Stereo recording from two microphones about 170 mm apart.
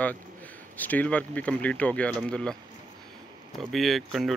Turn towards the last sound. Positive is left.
turn(degrees=0)  # may be behind; listen again after turning